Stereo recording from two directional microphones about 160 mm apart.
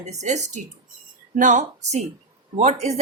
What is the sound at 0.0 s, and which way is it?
Speech, 45° right (ahead or behind).